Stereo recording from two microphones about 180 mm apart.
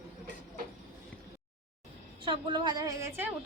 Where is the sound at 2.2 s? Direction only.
25° right (ahead or behind).